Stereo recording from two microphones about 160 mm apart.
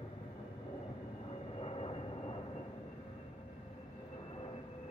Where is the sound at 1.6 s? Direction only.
40° left (ahead or behind).